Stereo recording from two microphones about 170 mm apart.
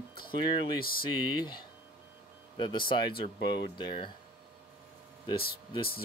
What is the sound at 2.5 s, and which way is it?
Speech, 30° left (ahead or behind).